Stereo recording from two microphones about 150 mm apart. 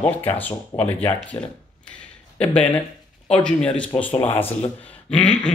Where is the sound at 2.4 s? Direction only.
10° left (ahead or behind).